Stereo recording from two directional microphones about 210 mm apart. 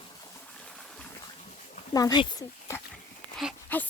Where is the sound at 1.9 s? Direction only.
20° left (ahead or behind).